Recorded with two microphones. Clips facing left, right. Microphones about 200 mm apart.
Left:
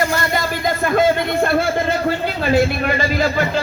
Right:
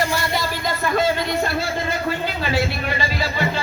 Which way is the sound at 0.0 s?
50° left (ahead or behind).